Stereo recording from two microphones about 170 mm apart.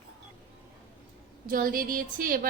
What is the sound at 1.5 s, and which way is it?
Speech, 55° right (ahead or behind).